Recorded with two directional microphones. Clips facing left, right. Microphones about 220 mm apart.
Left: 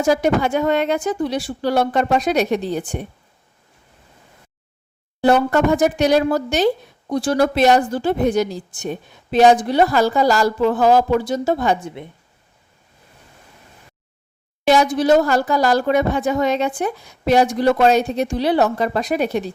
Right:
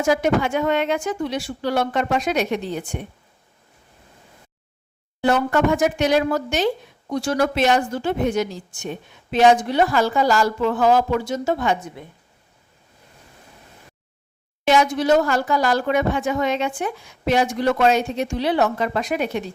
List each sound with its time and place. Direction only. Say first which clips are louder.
0.0 s a woman's voice: left 2 dB; 35° left (ahead or behind)
5.2 s a woman's voice: left 3 dB; 35° left (ahead or behind)
14.6 s a woman's voice: left 3 dB; 35° left (ahead or behind)